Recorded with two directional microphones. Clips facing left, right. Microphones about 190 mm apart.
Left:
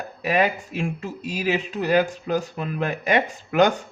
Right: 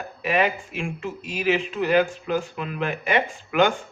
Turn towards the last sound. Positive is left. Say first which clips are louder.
# left 2 dB
turn(degrees=40)  # may be behind; listen again after turning